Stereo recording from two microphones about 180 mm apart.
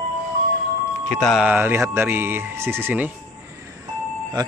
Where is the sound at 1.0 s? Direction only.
5° left (ahead or behind).